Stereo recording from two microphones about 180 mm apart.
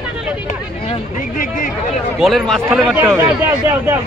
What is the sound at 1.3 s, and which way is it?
Speech, 45° left (ahead or behind).